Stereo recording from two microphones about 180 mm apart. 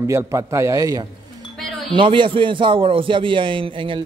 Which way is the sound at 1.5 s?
Centre (ahead or behind).